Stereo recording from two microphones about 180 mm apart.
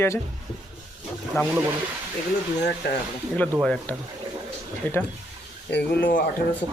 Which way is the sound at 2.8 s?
65° left (ahead or behind).